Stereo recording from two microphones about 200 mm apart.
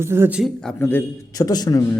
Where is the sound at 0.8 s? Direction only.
10° left (ahead or behind).